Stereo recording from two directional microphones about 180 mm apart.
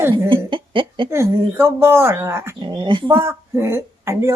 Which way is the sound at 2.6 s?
25° right (ahead or behind).